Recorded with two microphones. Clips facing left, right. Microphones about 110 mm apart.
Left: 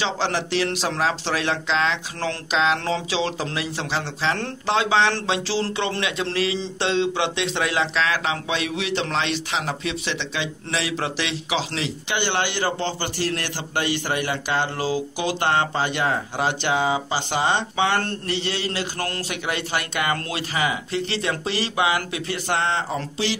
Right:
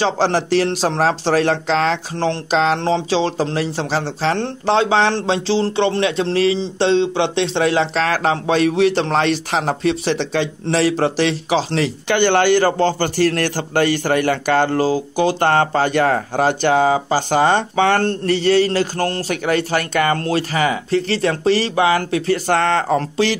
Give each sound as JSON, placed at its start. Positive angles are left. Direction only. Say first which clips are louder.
{"t": 0.0, "sound": "speech", "louder": "right 7 dB", "side_deg": -40}
{"t": 19.4, "sound": "speech", "louder": "right 8 dB", "side_deg": -45}
{"t": 22.6, "sound": "speech", "louder": "right 7 dB", "side_deg": -55}